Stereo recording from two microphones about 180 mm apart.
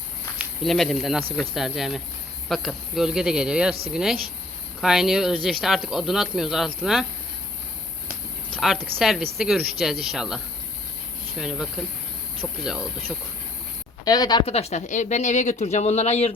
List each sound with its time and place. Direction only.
0.3 s speech: centre (ahead or behind)
8.5 s speech: centre (ahead or behind)
14.0 s speech: 20° left (ahead or behind); by 16.3 s 35° left (ahead or behind)